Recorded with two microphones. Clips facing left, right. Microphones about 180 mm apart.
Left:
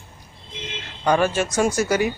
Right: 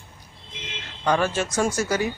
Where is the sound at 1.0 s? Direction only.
10° left (ahead or behind).